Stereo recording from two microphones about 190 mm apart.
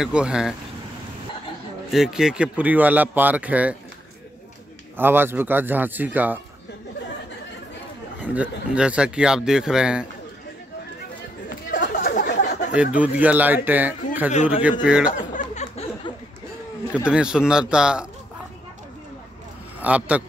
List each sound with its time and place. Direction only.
0.0 s speech: 5° right (ahead or behind)
1.9 s speech: centre (ahead or behind)
4.9 s speech: 10° right (ahead or behind)
8.3 s speech: 5° right (ahead or behind)
11.4 s chatter: 60° left (ahead or behind)
12.7 s speech: 5° right (ahead or behind)
14.3 s a man's voice: 40° left (ahead or behind)
14.6 s speech: 5° right (ahead or behind)
15.3 s a sound: 35° left (ahead or behind)
16.9 s speech: 5° right (ahead or behind)
19.8 s speech: 5° right (ahead or behind)